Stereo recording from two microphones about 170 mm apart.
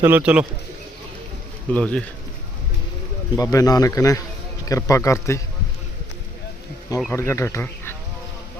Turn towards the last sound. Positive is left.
turn(degrees=15)  # may be behind; listen again after turning